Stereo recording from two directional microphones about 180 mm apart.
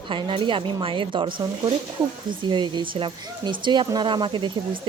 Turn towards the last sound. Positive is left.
turn(degrees=-25)  # may be behind; listen again after turning